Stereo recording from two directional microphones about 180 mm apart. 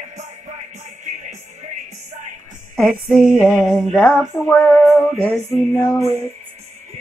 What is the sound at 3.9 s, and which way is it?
Female singing, 5° left (ahead or behind).